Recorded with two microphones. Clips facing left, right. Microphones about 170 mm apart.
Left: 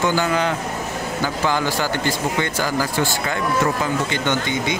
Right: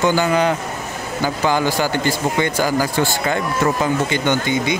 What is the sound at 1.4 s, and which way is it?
Speech, 15° right (ahead or behind).